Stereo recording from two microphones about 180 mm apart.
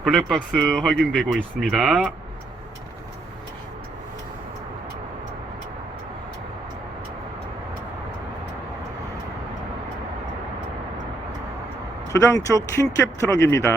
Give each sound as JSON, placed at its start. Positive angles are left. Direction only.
{"t": 0.0, "sound": "speech", "side_deg": 0}
{"t": 12.1, "sound": "speech", "side_deg": 15}